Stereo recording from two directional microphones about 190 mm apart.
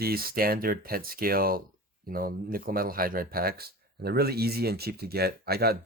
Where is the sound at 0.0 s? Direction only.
50° right (ahead or behind).